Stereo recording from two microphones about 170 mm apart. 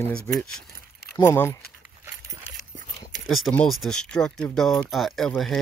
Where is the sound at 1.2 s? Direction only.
15° left (ahead or behind).